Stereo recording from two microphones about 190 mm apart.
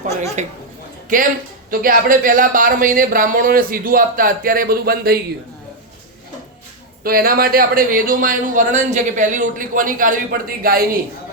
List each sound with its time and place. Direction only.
0.4 s a woman's voice: 40° right (ahead or behind)
1.7 s a man's voice: 45° right (ahead or behind)
7.0 s a man's voice: 50° right (ahead or behind)